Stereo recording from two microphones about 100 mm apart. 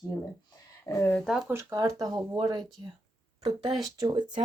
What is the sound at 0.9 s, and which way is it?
Speech, 25° left (ahead or behind).